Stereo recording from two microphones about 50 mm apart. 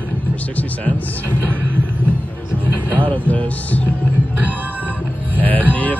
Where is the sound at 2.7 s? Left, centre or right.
Right.